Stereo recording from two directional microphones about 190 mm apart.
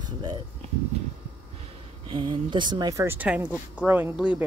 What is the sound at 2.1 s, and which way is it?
Speech, 25° right (ahead or behind).